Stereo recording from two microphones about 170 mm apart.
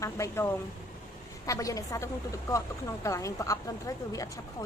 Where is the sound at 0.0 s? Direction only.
15° left (ahead or behind).